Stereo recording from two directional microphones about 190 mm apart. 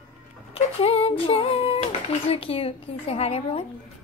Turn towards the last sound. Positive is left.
turn(degrees=30)  # may be behind; listen again after turning